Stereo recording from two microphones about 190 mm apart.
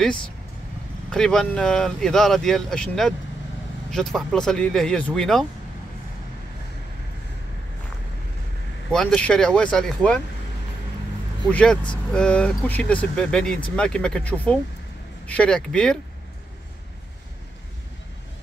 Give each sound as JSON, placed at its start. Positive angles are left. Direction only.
{"t": 1.1, "sound": "speech", "side_deg": 5}
{"t": 8.9, "sound": "speech", "side_deg": 5}
{"t": 11.5, "sound": "speech", "side_deg": 5}